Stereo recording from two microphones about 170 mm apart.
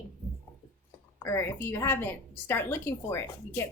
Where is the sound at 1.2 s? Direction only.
15° left (ahead or behind).